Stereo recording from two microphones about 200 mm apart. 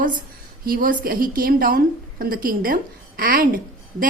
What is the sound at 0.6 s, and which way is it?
A woman's voice, 45° right (ahead or behind).